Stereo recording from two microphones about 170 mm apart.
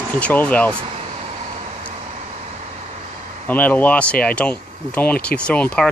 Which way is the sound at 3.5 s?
10° left (ahead or behind).